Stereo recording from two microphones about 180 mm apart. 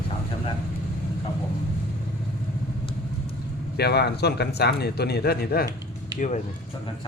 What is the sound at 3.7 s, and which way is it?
A man's voice, 65° left (ahead or behind).